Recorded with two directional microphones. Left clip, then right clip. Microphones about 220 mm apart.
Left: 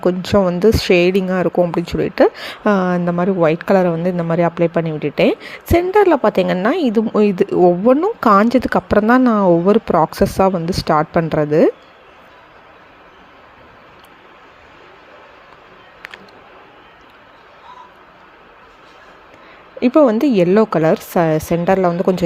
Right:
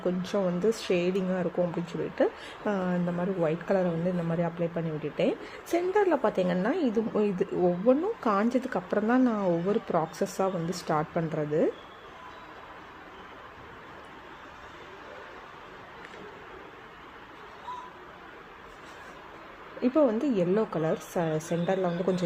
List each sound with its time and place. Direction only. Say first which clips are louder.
0.0 s speech: left 14 dB; 35° left (ahead or behind)
19.8 s speech: left 13 dB; 35° left (ahead or behind)